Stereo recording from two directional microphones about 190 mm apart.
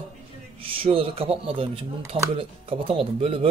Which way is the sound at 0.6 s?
30° right (ahead or behind).